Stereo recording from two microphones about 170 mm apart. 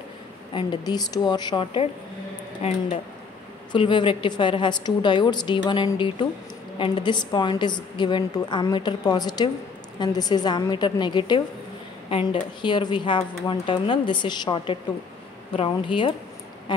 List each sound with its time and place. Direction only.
0.6 s a woman's voice: 25° left (ahead or behind)
3.7 s a woman's voice: 30° left (ahead or behind)